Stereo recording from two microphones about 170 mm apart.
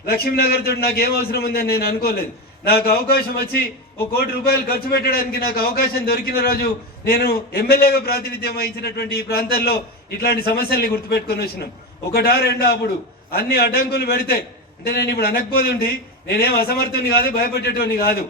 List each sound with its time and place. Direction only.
0.0 s a man's voice: 65° left (ahead or behind)